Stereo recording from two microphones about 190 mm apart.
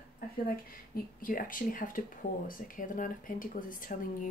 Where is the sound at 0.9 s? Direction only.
45° left (ahead or behind).